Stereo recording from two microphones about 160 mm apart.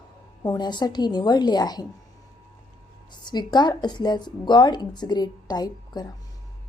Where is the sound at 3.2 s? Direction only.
25° left (ahead or behind).